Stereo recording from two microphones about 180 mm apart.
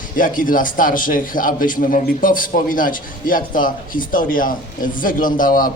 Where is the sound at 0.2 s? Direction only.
50° left (ahead or behind).